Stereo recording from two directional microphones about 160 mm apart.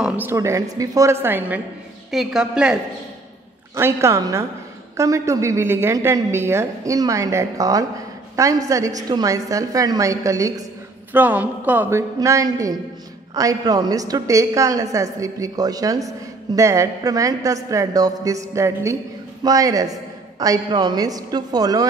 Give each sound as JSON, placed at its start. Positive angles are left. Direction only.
{"t": 0.0, "sound": "a woman's voice", "side_deg": -10}
{"t": 3.7, "sound": "a woman's voice", "side_deg": -15}